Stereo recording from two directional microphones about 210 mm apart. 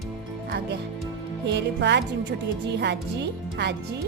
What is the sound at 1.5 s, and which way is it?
Speech, 55° right (ahead or behind).